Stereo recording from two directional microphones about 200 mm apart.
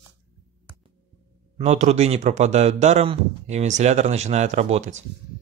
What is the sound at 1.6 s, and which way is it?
Speech, 35° right (ahead or behind).